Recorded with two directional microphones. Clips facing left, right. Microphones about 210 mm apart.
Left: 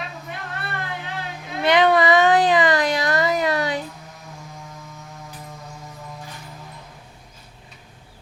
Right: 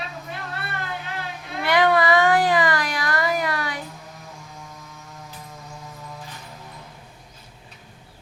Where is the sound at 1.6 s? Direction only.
20° left (ahead or behind).